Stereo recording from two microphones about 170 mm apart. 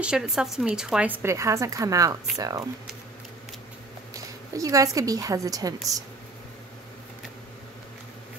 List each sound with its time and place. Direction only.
0.0 s a woman's voice: 5° right (ahead or behind); by 2.6 s 20° right (ahead or behind)
4.1 s a woman's voice: 20° right (ahead or behind)